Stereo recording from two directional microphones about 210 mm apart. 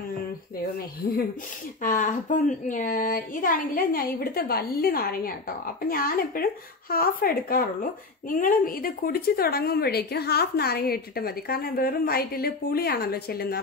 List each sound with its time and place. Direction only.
1.8 s a woman's voice: 40° left (ahead or behind)